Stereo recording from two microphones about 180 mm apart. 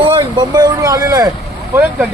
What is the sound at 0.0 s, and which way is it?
Speech, 20° right (ahead or behind).